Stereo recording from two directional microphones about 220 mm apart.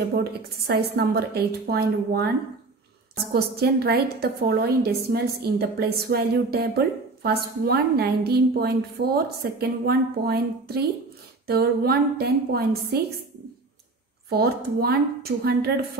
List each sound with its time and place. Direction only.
0.1 s a woman's voice: 45° right (ahead or behind)
3.3 s a woman's voice: 45° right (ahead or behind)
14.3 s a woman's voice: 45° right (ahead or behind)